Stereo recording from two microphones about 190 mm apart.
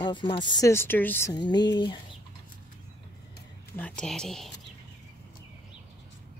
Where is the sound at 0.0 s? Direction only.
25° left (ahead or behind).